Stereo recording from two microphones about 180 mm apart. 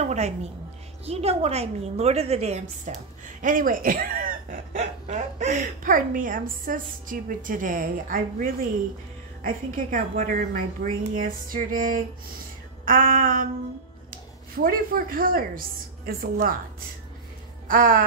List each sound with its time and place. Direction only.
0.0 s music: 40° right (ahead or behind)
1.0 s a woman's voice: 35° right (ahead or behind)
3.4 s a man's voice: 50° right (ahead or behind)
17.6 s speech: 50° right (ahead or behind)